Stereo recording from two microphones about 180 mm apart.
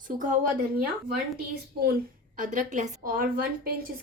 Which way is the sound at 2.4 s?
45° right (ahead or behind).